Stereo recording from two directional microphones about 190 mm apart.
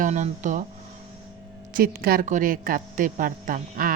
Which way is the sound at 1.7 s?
50° right (ahead or behind).